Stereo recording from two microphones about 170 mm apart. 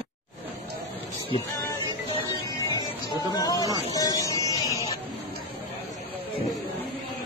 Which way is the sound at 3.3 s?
20° left (ahead or behind).